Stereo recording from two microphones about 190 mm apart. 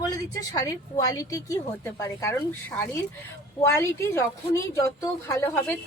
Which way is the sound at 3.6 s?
15° left (ahead or behind).